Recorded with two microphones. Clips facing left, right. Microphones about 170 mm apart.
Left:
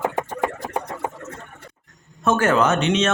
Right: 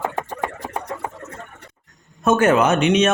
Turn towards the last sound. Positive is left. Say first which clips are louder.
# right 3 dB
turn(degrees=-15)  # may be behind; listen again after turning